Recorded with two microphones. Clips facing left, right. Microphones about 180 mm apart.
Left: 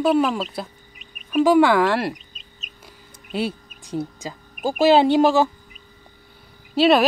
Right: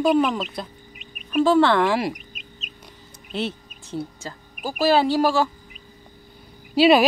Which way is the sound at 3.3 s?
10° left (ahead or behind).